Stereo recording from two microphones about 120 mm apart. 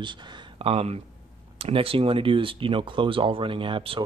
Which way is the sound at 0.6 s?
55° right (ahead or behind).